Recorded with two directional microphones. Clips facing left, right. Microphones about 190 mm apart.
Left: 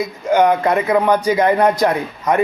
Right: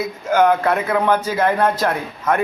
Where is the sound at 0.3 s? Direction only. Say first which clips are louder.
Left 1 dB; 15° left (ahead or behind).